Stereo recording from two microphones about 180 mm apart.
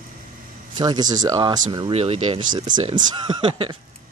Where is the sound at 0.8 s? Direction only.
20° right (ahead or behind).